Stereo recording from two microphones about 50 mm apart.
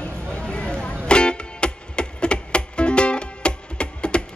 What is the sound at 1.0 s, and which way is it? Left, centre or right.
Music, centre.